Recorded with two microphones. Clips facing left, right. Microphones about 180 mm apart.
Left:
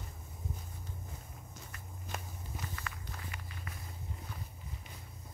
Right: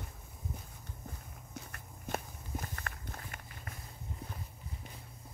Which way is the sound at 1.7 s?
50° right (ahead or behind).